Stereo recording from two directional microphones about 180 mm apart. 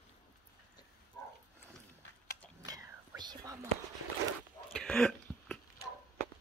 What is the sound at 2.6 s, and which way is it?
Whispering, 20° right (ahead or behind).